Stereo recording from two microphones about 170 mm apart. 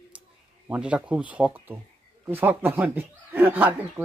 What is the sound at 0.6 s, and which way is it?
Speech, 5° right (ahead or behind).